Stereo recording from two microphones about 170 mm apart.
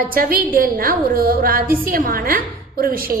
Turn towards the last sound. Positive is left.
turn(degrees=-55)  # may be behind; listen again after turning